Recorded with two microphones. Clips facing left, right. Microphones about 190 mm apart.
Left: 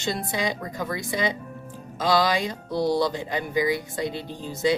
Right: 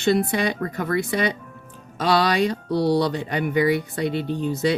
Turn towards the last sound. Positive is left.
turn(degrees=-65)  # may be behind; listen again after turning